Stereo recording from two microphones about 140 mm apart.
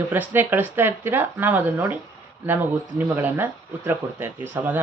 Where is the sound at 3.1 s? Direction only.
15° right (ahead or behind).